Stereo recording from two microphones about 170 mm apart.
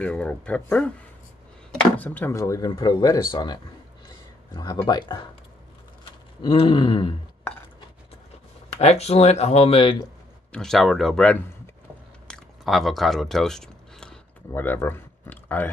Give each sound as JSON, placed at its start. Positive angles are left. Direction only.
{"t": 0.0, "sound": "speech", "side_deg": 5}
{"t": 4.6, "sound": "speech", "side_deg": 25}
{"t": 6.4, "sound": "speech", "side_deg": 30}
{"t": 8.7, "sound": "speech", "side_deg": 40}
{"t": 10.5, "sound": "speech", "side_deg": 5}
{"t": 12.3, "sound": "chewing", "side_deg": 0}
{"t": 14.5, "sound": "speech", "side_deg": 15}